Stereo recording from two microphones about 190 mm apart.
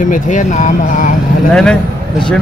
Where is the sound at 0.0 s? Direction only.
40° left (ahead or behind).